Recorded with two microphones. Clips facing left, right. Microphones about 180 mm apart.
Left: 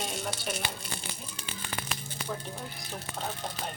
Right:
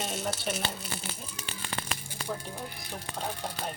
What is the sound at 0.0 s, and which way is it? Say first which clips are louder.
Crumpling: right 2 dB; 5° right (ahead or behind).